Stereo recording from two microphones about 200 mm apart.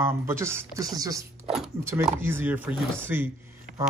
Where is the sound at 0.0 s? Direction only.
15° right (ahead or behind).